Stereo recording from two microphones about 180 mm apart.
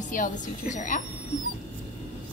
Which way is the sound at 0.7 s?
45° left (ahead or behind).